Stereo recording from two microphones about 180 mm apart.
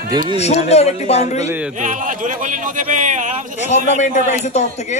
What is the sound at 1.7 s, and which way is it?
Speech, 45° right (ahead or behind).